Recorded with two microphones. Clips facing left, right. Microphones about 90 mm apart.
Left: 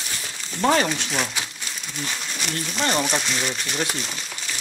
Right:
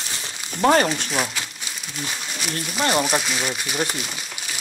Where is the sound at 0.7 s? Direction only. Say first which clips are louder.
Right 3 dB; 40° right (ahead or behind).